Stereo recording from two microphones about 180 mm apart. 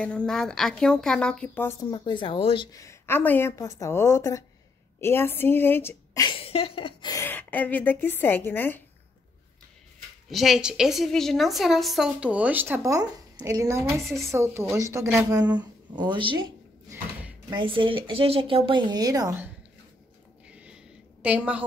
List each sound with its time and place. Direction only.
0.0 s a woman's voice: 5° left (ahead or behind)
6.2 s a woman's voice: 30° left (ahead or behind); by 8.8 s 10° left (ahead or behind)
10.3 s a woman's voice: centre (ahead or behind)
14.0 s a woman's voice: centre (ahead or behind)
14.3 s speech: 15° right (ahead or behind)
20.4 s a sound: 5° right (ahead or behind)